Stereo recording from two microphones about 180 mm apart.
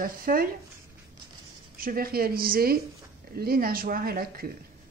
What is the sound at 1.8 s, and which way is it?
Speech, 55° right (ahead or behind).